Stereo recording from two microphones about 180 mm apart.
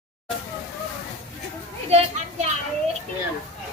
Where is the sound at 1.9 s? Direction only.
35° right (ahead or behind).